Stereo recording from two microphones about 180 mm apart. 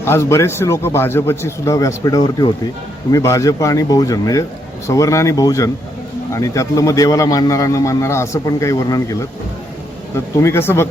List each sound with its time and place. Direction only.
0.0 s a man's voice: 15° left (ahead or behind)
10.2 s a man's voice: 15° left (ahead or behind)